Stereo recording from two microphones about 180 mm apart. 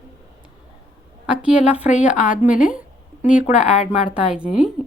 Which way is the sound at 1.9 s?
45° left (ahead or behind).